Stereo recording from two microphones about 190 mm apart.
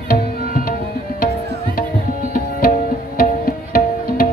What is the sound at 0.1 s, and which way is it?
Tabla, 45° left (ahead or behind).